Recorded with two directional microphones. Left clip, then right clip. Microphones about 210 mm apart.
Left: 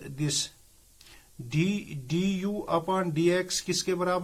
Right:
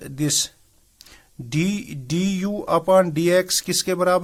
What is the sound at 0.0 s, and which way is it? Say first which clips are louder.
Speech: right 8 dB; 45° right (ahead or behind).